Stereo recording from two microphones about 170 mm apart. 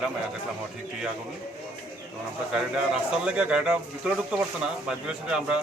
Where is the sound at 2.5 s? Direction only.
5° right (ahead or behind).